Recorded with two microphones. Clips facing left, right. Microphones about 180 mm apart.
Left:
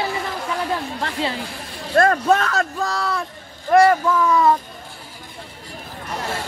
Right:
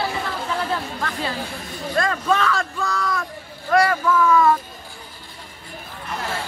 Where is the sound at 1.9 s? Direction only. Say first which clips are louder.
Left 5 dB; 45° left (ahead or behind); by 4.5 s 25° left (ahead or behind).